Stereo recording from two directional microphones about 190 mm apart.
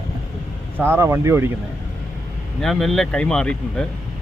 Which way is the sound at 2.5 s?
Centre (ahead or behind).